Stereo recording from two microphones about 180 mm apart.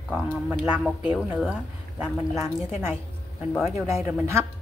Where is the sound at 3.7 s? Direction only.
15° right (ahead or behind).